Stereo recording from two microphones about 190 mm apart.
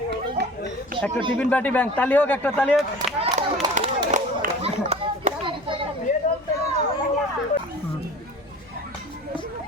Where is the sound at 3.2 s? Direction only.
35° right (ahead or behind).